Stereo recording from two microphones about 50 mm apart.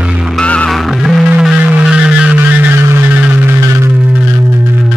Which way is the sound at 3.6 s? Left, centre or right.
Right.